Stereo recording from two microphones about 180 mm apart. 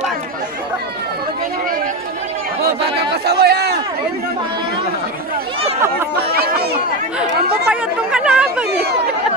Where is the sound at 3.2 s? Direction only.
65° right (ahead or behind).